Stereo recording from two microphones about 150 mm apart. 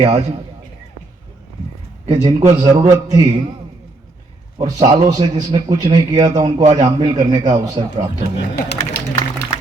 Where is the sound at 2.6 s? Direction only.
25° right (ahead or behind).